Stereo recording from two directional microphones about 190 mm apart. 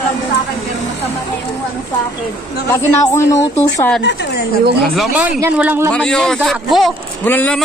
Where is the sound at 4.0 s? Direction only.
65° left (ahead or behind).